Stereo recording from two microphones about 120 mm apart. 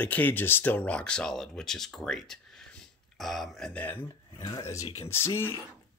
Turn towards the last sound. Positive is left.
turn(degrees=20)  # may be behind; listen again after turning